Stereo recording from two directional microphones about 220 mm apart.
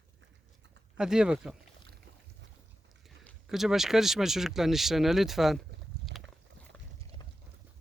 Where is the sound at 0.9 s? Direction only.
5° right (ahead or behind).